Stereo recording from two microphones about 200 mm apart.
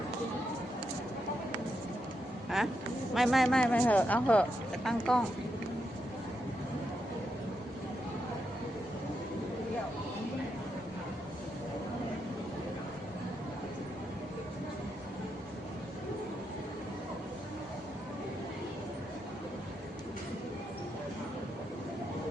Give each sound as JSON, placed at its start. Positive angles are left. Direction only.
{"t": 2.5, "sound": "speech", "side_deg": 0}